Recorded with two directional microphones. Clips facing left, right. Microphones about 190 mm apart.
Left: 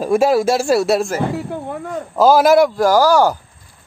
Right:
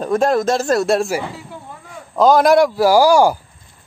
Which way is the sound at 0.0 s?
5° left (ahead or behind).